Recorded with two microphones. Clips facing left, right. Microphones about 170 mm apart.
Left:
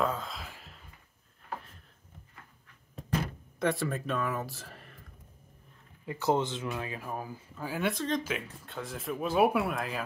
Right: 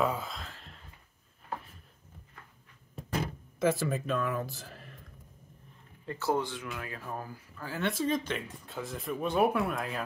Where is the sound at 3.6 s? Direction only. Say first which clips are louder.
Right 2 dB; centre (ahead or behind).